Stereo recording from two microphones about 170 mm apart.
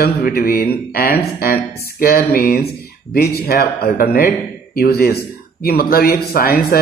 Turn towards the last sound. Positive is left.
turn(degrees=65)  # may be behind; listen again after turning